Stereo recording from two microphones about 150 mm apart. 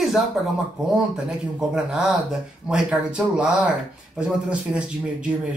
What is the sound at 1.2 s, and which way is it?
Speech, 5° right (ahead or behind).